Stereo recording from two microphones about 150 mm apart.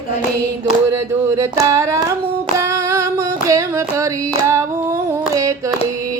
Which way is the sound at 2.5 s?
20° right (ahead or behind).